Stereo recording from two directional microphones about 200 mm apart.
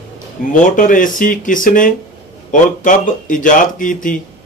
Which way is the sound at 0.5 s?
40° left (ahead or behind).